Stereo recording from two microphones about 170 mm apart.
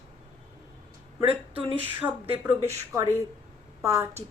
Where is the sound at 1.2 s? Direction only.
35° right (ahead or behind).